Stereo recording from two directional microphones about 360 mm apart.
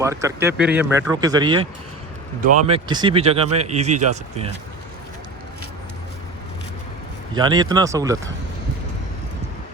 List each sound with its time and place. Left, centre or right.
0.0 s speech: centre
2.6 s speech: centre
7.3 s speech: centre